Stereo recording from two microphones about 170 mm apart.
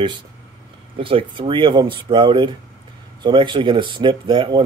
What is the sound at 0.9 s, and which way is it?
Speech, 30° right (ahead or behind).